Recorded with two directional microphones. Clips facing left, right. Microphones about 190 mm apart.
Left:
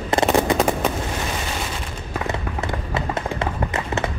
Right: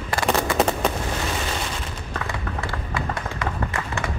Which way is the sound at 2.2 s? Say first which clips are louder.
Left 5 dB; 20° left (ahead or behind).